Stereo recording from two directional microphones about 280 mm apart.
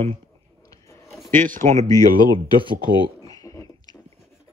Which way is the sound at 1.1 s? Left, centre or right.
Centre.